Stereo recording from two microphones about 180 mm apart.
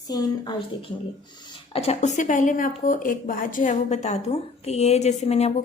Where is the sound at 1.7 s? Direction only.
35° left (ahead or behind).